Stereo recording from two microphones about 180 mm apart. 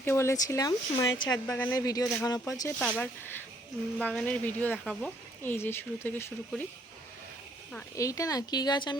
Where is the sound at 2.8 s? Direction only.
5° left (ahead or behind).